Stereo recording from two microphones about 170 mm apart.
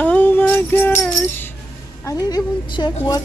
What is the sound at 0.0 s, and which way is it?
Music, 10° left (ahead or behind).